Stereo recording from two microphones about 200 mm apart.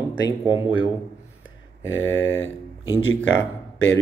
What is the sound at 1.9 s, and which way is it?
Speech, 80° left.